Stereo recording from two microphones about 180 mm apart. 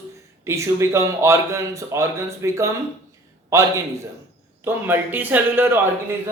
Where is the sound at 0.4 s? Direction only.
15° right (ahead or behind).